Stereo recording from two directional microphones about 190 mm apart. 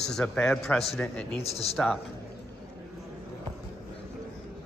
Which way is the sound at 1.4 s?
35° left (ahead or behind).